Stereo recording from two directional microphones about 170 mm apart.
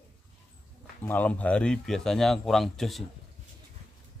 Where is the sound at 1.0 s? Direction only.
10° left (ahead or behind).